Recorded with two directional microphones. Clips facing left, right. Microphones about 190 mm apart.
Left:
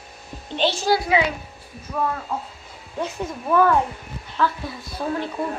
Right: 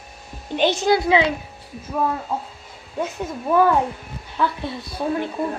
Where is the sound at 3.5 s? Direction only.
15° right (ahead or behind).